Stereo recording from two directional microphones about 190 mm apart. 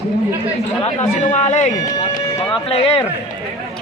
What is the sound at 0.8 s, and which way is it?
Speech, 40° left (ahead or behind).